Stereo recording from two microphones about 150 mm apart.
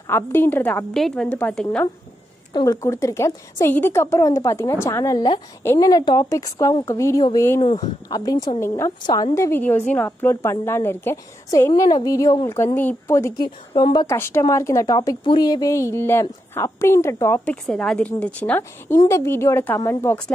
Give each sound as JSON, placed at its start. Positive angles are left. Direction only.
{"t": 0.0, "sound": "a woman's voice", "side_deg": 15}
{"t": 2.5, "sound": "a woman's voice", "side_deg": 25}
{"t": 7.6, "sound": "speech", "side_deg": 45}
{"t": 8.1, "sound": "a woman's voice", "side_deg": 25}
{"t": 13.4, "sound": "speech", "side_deg": 30}
{"t": 14.1, "sound": "a woman's voice", "side_deg": 15}
{"t": 17.6, "sound": "a woman's voice", "side_deg": 5}